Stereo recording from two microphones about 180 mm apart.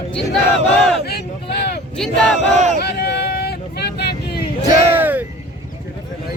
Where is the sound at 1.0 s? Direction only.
65° left (ahead or behind).